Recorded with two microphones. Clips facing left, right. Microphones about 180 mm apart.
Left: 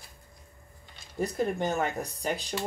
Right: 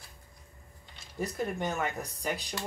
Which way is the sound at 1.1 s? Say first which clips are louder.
Left 4 dB; 30° left (ahead or behind).